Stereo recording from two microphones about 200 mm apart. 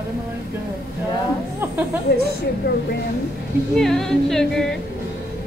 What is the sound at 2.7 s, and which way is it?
Speech, 55° left (ahead or behind).